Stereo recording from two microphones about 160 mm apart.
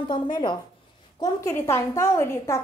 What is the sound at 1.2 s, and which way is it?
A woman's voice, 20° left (ahead or behind).